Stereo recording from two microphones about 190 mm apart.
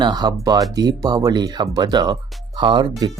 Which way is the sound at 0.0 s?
20° right (ahead or behind).